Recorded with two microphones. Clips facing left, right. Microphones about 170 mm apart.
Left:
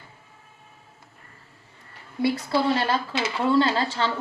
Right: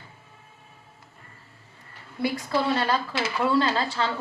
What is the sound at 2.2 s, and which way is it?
A woman's voice, 25° left (ahead or behind).